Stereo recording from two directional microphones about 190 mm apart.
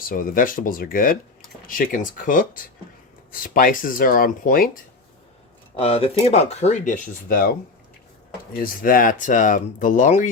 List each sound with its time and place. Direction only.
0.1 s speech: 45° left (ahead or behind)
5.8 s speech: 30° left (ahead or behind); by 7.5 s 45° left (ahead or behind)
8.5 s speech: 50° left (ahead or behind)